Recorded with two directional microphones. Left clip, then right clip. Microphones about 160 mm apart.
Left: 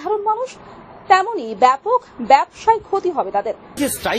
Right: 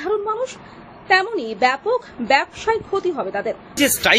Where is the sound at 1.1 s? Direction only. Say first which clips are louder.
Left 3 dB; 20° left (ahead or behind).